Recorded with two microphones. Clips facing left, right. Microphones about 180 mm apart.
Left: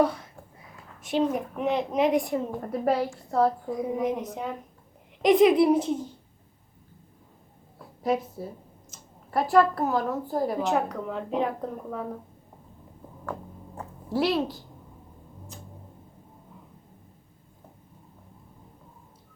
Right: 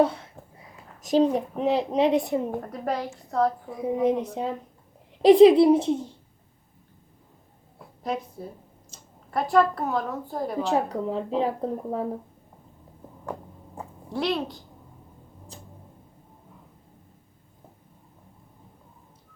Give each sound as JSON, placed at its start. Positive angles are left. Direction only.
{"t": 0.0, "sound": "a woman's voice", "side_deg": -25}
{"t": 2.6, "sound": "a woman's voice", "side_deg": 5}
{"t": 3.7, "sound": "a woman's voice", "side_deg": -30}
{"t": 8.0, "sound": "a woman's voice", "side_deg": 5}
{"t": 10.6, "sound": "a woman's voice", "side_deg": -35}
{"t": 14.1, "sound": "a woman's voice", "side_deg": 5}